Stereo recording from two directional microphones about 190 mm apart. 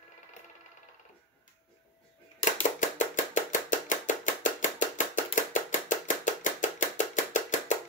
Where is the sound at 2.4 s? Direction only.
40° left (ahead or behind).